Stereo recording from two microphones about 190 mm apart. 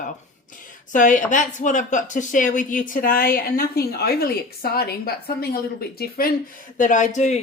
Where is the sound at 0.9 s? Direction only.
40° left (ahead or behind).